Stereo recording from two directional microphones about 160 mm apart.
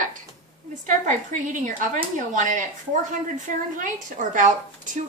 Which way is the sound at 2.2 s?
55° right (ahead or behind).